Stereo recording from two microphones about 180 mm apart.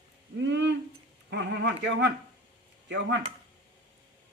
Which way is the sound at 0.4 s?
75° right (ahead or behind).